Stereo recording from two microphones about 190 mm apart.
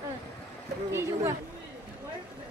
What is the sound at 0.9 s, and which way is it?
Speech, 15° right (ahead or behind).